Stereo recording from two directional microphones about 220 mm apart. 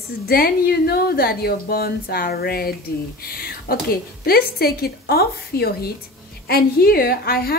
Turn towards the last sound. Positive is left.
turn(degrees=45)  # may be behind; listen again after turning